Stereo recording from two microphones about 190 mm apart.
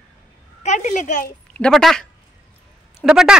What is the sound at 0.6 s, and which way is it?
Speech, 40° left (ahead or behind).